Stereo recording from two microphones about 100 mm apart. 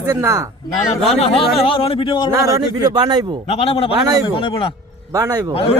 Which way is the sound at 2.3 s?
35° right (ahead or behind).